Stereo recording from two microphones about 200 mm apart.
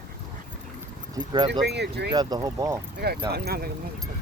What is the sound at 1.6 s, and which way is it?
Speech, 55° right (ahead or behind).